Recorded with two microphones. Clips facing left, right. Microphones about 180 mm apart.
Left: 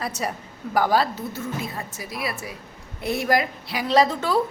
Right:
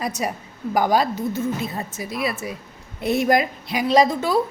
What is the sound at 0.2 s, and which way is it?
A woman's voice, 15° right (ahead or behind).